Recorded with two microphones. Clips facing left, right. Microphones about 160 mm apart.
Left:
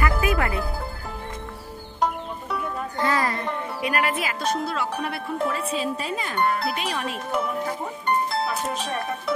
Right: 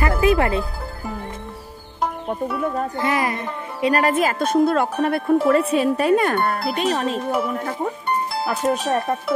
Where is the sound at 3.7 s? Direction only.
35° right (ahead or behind); by 5.3 s 50° right (ahead or behind).